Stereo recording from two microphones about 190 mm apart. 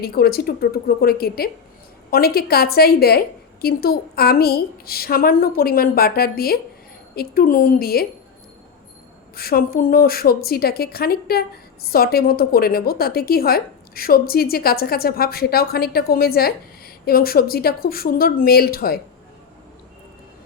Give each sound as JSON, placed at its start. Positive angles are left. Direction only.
{"t": 0.0, "sound": "a woman's voice", "side_deg": 55}
{"t": 9.3, "sound": "a woman's voice", "side_deg": 55}